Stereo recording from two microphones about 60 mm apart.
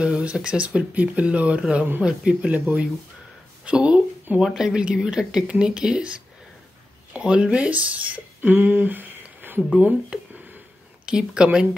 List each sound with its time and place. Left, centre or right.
0.0 s speech: centre
3.6 s a sound: centre
4.6 s speech: centre; by 9.6 s right
11.1 s speech: centre